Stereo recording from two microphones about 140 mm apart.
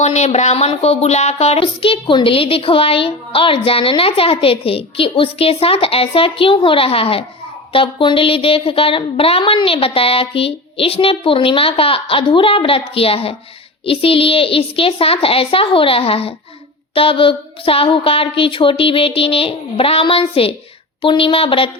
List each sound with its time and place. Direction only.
0.0 s speech: 50° left (ahead or behind)